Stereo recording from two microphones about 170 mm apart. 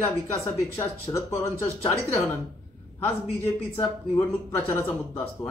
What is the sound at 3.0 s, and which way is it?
Speech, 15° left (ahead or behind).